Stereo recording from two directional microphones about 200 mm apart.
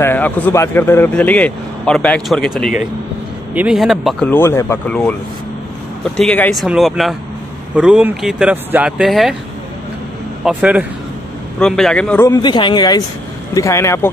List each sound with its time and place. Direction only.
0.0 s speech: 10° left (ahead or behind)
3.5 s speech: 5° right (ahead or behind)
6.1 s speech: 5° left (ahead or behind)
10.4 s a man's voice: 5° right (ahead or behind)
11.6 s speech: 5° left (ahead or behind)
12.4 s a man's voice: 25° left (ahead or behind)